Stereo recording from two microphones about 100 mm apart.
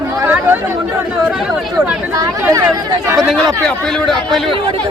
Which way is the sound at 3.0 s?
30° right (ahead or behind).